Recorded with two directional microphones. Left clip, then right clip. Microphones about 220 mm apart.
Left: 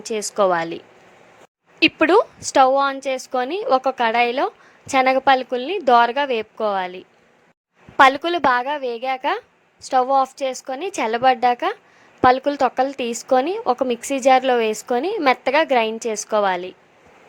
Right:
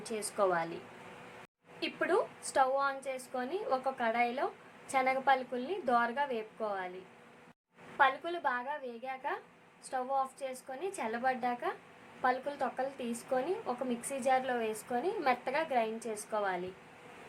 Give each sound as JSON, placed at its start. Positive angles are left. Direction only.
{"t": 0.0, "sound": "a woman's voice", "side_deg": 35}
{"t": 1.8, "sound": "a woman's voice", "side_deg": 45}
{"t": 7.9, "sound": "a woman's voice", "side_deg": 45}